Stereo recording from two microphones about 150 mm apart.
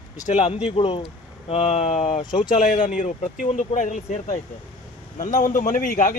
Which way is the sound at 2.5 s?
60° left (ahead or behind).